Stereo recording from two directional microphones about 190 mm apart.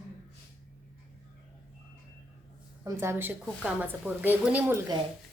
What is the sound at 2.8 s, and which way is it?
A woman's voice, 15° right (ahead or behind).